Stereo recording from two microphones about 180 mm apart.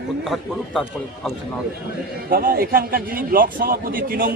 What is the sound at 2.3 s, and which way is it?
A man's voice, 60° right (ahead or behind).